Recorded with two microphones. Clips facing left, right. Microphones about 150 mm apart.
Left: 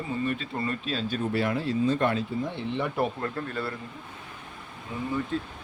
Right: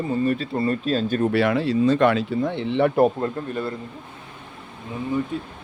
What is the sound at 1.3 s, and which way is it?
Speech, 80° right.